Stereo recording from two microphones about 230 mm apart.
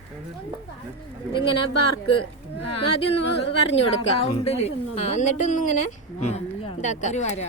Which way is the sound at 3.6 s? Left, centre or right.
Left.